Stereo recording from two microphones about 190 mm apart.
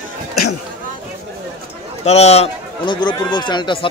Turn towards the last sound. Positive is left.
turn(degrees=25)  # may be behind; listen again after turning